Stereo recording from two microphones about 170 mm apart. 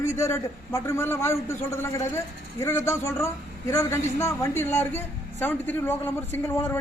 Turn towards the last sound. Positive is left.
turn(degrees=10)  # may be behind; listen again after turning